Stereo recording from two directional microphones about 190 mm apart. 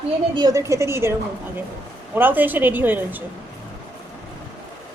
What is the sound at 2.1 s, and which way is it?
A woman's voice, 10° right (ahead or behind).